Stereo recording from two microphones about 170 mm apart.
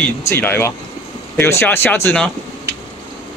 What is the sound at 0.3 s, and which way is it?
Speech, 15° left (ahead or behind).